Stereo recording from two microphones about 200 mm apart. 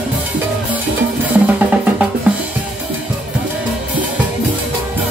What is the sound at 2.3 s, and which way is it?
Drum kit, 5° right (ahead or behind).